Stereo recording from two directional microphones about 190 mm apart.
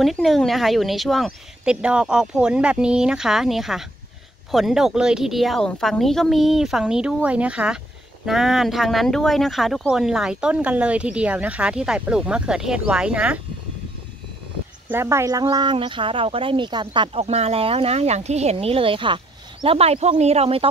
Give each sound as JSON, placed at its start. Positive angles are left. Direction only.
{"t": 0.0, "sound": "speech", "side_deg": 0}
{"t": 14.9, "sound": "speech", "side_deg": -15}